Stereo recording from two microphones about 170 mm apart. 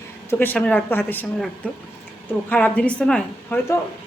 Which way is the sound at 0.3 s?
10° left (ahead or behind).